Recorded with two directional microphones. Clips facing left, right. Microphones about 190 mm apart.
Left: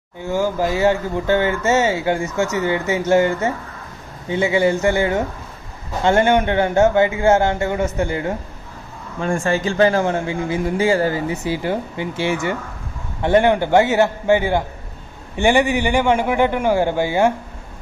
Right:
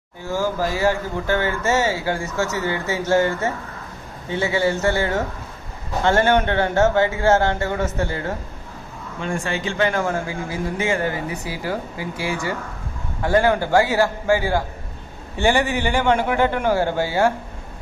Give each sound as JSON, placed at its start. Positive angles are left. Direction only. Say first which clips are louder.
{"t": 0.2, "sound": "a man's voice", "louder": "left 3 dB", "side_deg": 15}
{"t": 9.2, "sound": "a man's voice", "louder": "left 6 dB", "side_deg": 45}